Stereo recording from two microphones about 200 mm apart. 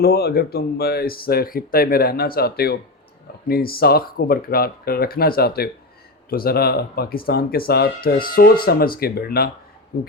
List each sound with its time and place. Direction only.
0.0 s speech: 50° left (ahead or behind)